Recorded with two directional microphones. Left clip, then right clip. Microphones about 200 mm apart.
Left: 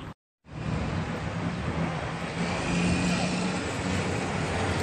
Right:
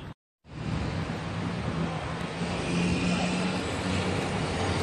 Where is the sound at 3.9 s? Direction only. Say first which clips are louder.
Even; 15° left (ahead or behind).